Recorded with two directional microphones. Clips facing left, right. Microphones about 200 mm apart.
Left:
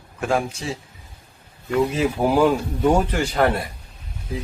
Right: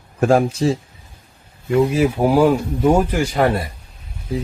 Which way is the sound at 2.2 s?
5° right (ahead or behind).